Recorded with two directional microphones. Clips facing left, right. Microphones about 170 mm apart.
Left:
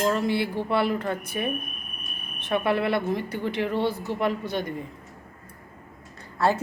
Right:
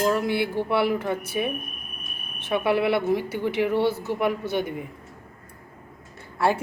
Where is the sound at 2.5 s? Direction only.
5° right (ahead or behind).